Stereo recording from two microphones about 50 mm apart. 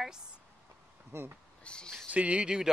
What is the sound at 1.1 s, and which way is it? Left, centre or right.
Speech, right.